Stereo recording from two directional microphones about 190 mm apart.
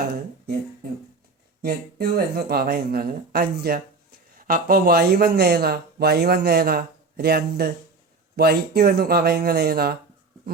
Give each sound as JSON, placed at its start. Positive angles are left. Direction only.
{"t": 1.6, "sound": "a man's voice", "side_deg": -55}